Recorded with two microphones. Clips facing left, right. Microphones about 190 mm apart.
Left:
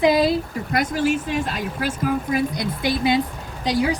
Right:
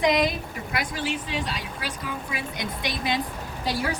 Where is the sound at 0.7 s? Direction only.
45° left (ahead or behind); by 3.2 s 25° left (ahead or behind).